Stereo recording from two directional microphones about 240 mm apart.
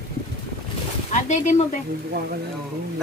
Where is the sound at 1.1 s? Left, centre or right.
Left.